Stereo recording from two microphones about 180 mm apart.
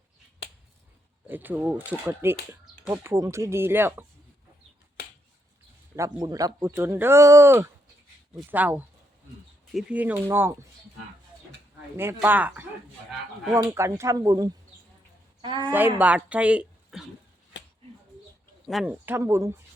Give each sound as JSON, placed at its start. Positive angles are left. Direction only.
{"t": 1.3, "sound": "speech", "side_deg": -10}
{"t": 6.0, "sound": "speech", "side_deg": -20}
{"t": 11.9, "sound": "speech", "side_deg": -10}
{"t": 16.0, "sound": "speech", "side_deg": -10}
{"t": 17.5, "sound": "a sound", "side_deg": 90}
{"t": 18.7, "sound": "speech", "side_deg": -5}